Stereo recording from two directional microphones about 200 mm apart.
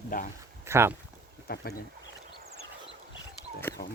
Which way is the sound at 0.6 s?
15° right (ahead or behind).